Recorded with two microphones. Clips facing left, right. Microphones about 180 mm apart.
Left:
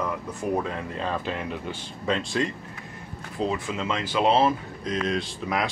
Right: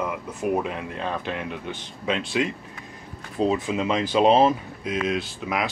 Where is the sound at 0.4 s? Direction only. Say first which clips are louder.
Right 3 dB; 15° right (ahead or behind).